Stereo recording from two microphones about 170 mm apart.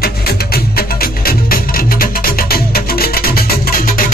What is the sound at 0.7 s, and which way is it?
Music, 60° left (ahead or behind).